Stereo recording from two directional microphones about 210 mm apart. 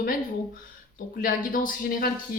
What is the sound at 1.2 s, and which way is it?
Speech, 40° left (ahead or behind).